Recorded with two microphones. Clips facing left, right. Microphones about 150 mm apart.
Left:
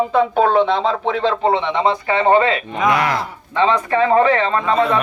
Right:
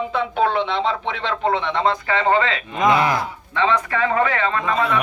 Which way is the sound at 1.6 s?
20° left (ahead or behind).